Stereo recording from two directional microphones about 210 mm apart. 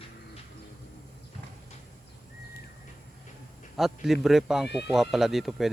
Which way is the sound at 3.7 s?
Centre (ahead or behind).